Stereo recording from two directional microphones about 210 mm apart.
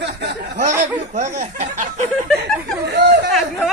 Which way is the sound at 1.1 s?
35° right (ahead or behind).